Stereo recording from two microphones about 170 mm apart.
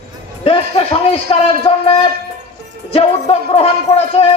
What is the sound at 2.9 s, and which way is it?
Music, 35° left (ahead or behind).